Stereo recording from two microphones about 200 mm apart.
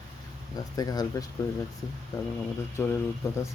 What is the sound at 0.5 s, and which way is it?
Speech, 20° left (ahead or behind).